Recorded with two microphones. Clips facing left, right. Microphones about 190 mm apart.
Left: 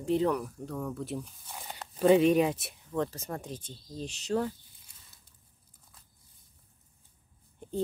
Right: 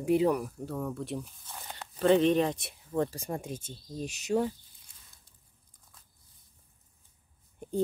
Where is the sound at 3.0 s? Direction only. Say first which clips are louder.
Right 2 dB; 10° right (ahead or behind).